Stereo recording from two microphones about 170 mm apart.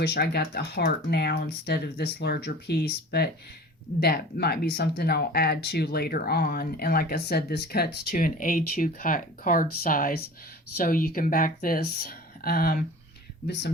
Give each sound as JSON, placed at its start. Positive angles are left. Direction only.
{"t": 0.0, "sound": "speech", "side_deg": 70}